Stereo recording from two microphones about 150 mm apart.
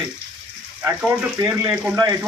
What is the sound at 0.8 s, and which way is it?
A man's voice, 10° right (ahead or behind).